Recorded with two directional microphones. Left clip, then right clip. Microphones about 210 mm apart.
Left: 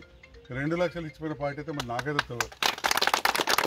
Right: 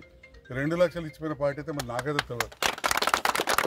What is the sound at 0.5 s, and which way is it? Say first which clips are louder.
Speech: right 3 dB; 15° right (ahead or behind).